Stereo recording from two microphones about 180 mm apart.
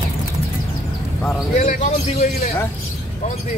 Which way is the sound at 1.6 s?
45° left (ahead or behind).